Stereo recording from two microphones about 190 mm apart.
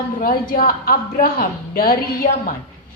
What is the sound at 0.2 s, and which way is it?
A woman's voice, 50° left (ahead or behind).